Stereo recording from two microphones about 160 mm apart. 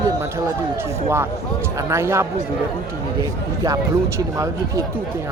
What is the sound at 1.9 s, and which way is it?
Speech, 15° right (ahead or behind).